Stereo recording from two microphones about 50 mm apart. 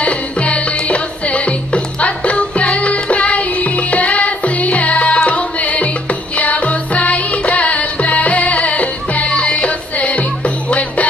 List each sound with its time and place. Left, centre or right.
0.0 s music: left